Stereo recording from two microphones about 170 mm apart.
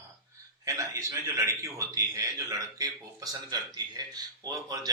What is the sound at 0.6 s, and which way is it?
A man's voice, 20° right (ahead or behind).